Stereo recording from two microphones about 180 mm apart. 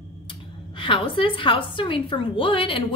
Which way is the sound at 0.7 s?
30° left (ahead or behind).